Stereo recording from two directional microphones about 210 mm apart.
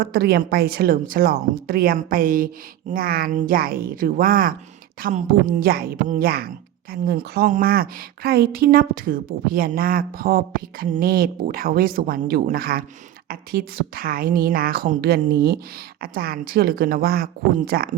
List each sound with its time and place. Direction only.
0.0 s a woman's voice: 50° right (ahead or behind)